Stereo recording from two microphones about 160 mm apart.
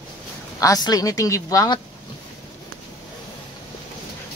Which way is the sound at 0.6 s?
25° left (ahead or behind).